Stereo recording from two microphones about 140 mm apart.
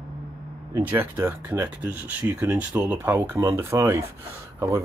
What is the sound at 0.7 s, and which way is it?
Speech, 15° right (ahead or behind).